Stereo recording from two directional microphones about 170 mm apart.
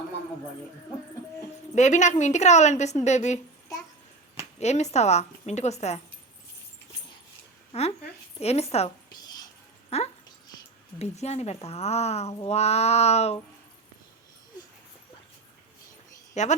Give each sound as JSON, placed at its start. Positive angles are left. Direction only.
{"t": 1.7, "sound": "a woman's voice", "side_deg": 45}
{"t": 4.6, "sound": "speech", "side_deg": 40}
{"t": 7.7, "sound": "a woman's voice", "side_deg": 40}
{"t": 9.9, "sound": "speech", "side_deg": 40}
{"t": 16.3, "sound": "speech", "side_deg": 45}